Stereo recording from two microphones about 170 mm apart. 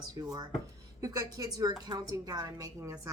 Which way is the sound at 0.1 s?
20° right (ahead or behind).